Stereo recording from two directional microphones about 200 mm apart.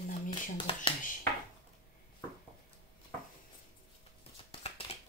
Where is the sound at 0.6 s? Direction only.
30° left (ahead or behind).